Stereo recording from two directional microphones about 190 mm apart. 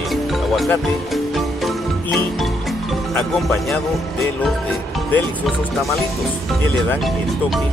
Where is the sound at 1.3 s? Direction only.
Centre (ahead or behind).